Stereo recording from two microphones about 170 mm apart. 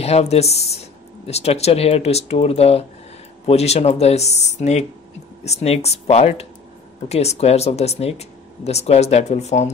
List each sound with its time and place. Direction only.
0.0 s speech: 40° left (ahead or behind)